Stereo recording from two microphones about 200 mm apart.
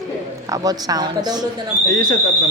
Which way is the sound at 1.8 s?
55° right (ahead or behind).